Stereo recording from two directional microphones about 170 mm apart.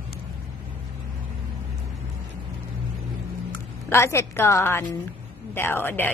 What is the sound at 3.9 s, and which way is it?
A woman's voice, 15° left (ahead or behind).